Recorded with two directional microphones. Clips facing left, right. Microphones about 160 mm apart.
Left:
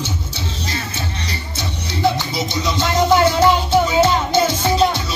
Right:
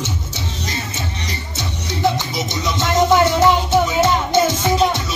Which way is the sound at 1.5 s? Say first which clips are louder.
Even; 20° right (ahead or behind).